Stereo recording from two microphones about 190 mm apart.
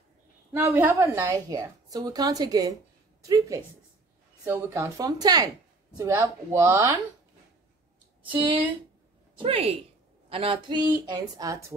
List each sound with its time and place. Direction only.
0.5 s a woman's voice: 10° right (ahead or behind)
8.3 s a woman's voice: 25° right (ahead or behind)